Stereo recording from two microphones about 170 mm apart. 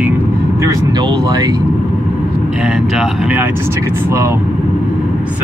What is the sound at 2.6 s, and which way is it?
Speech, 5° right (ahead or behind).